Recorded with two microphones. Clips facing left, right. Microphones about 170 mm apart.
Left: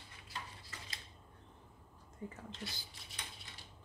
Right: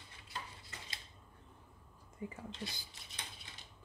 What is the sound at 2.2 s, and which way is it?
Speech, 10° right (ahead or behind).